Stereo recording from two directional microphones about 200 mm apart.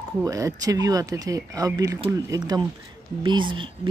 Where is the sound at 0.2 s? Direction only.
15° right (ahead or behind).